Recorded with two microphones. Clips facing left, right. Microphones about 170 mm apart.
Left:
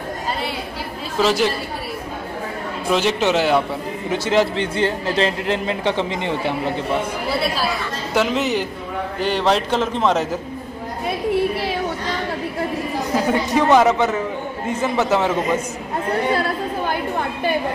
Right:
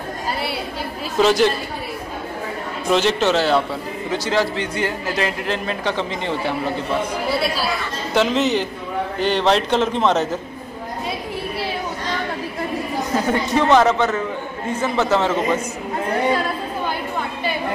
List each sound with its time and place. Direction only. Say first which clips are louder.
1.2 s a man's voice: right 2 dB; 5° left (ahead or behind)
2.9 s a man's voice: right 1 dB; 10° left (ahead or behind)
8.1 s a man's voice: right 2 dB; 10° left (ahead or behind)
13.1 s speech: left 1 dB; 10° left (ahead or behind)